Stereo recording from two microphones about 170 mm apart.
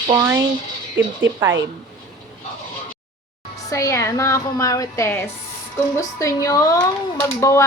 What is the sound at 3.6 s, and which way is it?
Speech, 20° left (ahead or behind).